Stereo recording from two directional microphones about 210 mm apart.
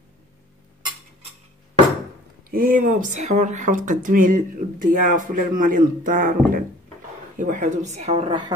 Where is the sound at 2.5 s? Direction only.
40° right (ahead or behind).